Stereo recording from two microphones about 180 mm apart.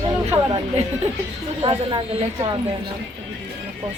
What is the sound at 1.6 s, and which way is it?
Speech, 25° right (ahead or behind).